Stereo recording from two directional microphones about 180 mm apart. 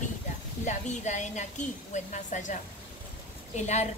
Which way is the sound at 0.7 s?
40° left (ahead or behind).